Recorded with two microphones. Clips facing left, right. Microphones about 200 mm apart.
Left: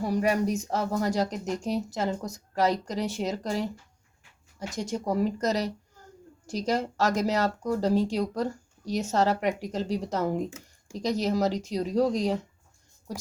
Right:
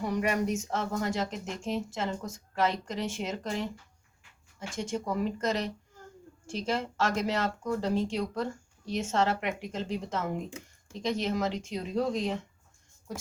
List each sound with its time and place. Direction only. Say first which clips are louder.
0.0 s speech: left 4 dB; 35° left (ahead or behind)
4.7 s speech: left 3 dB; 40° left (ahead or behind)